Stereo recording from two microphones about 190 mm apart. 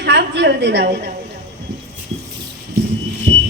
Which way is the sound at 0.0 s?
65° right (ahead or behind).